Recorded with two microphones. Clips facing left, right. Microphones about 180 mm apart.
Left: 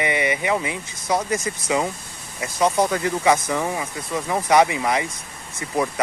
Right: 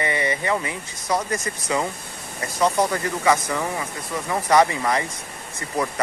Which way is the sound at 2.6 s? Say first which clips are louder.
Left 1 dB; 15° left (ahead or behind).